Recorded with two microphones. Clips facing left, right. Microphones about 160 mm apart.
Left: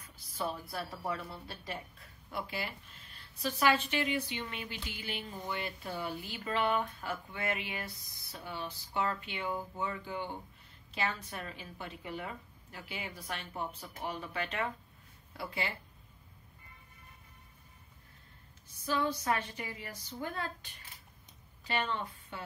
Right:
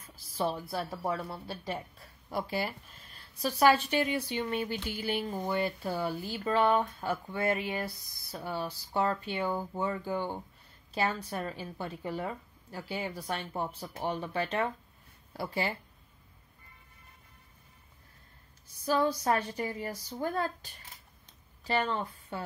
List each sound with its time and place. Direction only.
0.4 s a woman's voice: 30° right (ahead or behind)
18.9 s a woman's voice: 40° right (ahead or behind)